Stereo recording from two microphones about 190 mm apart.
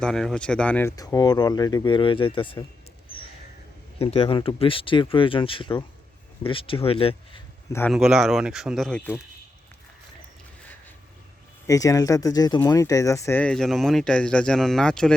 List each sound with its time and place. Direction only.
0.0 s speech: 5° left (ahead or behind); by 2.6 s 25° left (ahead or behind)
3.9 s speech: 30° left (ahead or behind)
7.7 s speech: 10° left (ahead or behind)
7.9 s speech: 5° right (ahead or behind)
11.6 s speech: 15° left (ahead or behind)